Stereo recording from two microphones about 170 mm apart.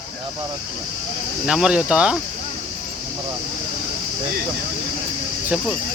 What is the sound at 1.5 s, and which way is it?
Speech, 5° right (ahead or behind).